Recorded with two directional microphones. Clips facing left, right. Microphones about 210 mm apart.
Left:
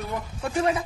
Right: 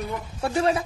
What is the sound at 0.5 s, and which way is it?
Speech, 30° right (ahead or behind).